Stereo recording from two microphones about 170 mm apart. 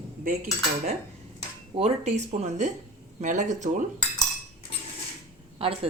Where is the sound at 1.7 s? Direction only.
40° right (ahead or behind).